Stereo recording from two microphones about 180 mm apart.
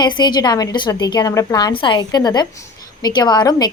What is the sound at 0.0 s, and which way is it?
A woman's voice, 25° left (ahead or behind).